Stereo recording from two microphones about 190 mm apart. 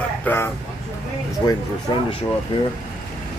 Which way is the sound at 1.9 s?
20° left (ahead or behind).